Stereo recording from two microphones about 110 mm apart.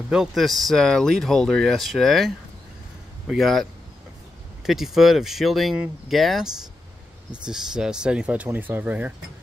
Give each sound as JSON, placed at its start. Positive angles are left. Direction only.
{"t": 0.1, "sound": "speech", "side_deg": -5}
{"t": 4.6, "sound": "speech", "side_deg": -5}